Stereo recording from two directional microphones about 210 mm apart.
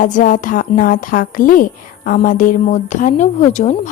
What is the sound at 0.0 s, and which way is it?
A woman's voice, 40° left (ahead or behind).